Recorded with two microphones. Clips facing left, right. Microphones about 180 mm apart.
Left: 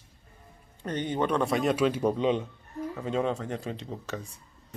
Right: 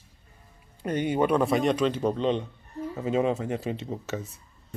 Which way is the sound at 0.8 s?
10° right (ahead or behind).